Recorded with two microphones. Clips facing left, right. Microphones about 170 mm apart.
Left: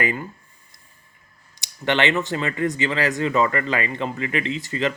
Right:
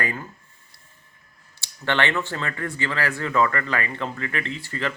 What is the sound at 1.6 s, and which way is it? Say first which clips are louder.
Speech: left 3 dB; 15° left (ahead or behind).